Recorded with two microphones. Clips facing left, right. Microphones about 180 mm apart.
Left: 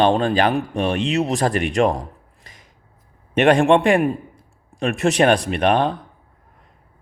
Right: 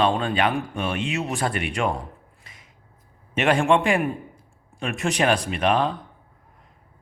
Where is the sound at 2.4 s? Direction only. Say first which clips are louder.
Left 3 dB; 40° left (ahead or behind).